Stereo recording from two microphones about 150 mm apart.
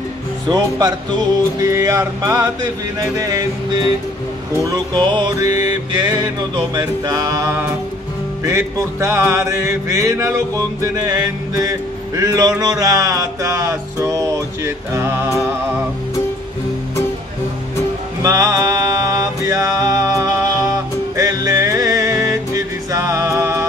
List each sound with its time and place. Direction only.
0.5 s music: 25° right (ahead or behind)
4.6 s music: 25° right (ahead or behind)
18.2 s music: 20° right (ahead or behind)